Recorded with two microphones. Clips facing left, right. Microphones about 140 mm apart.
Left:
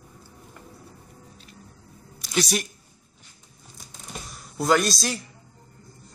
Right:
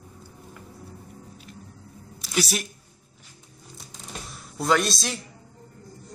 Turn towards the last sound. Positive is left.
turn(degrees=0)  # may be behind; listen again after turning